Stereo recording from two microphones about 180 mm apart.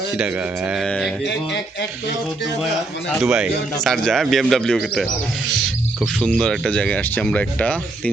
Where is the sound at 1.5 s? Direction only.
75° left (ahead or behind).